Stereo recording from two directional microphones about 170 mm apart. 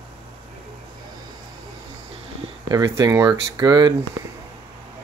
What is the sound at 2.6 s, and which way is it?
Speech, 20° right (ahead or behind).